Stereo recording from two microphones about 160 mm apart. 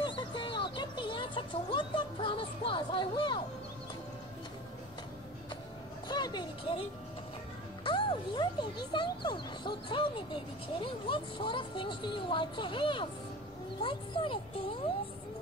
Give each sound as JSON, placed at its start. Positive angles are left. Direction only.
{"t": 0.0, "sound": "music", "side_deg": 30}
{"t": 6.0, "sound": "speech", "side_deg": 25}
{"t": 7.8, "sound": "music", "side_deg": 30}
{"t": 8.9, "sound": "speech", "side_deg": 30}